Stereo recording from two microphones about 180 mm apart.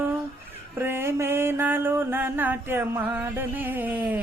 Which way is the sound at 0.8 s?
10° right (ahead or behind).